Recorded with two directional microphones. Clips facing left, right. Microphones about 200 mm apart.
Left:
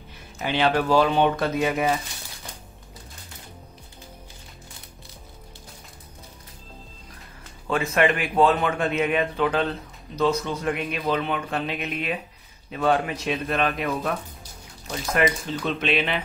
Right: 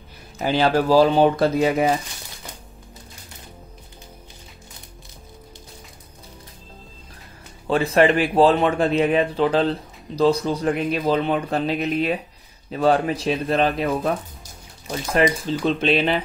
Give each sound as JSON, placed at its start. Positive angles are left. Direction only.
{"t": 0.4, "sound": "a man's voice", "side_deg": -35}
{"t": 7.6, "sound": "a man's voice", "side_deg": -35}
{"t": 15.1, "sound": "a man's voice", "side_deg": -30}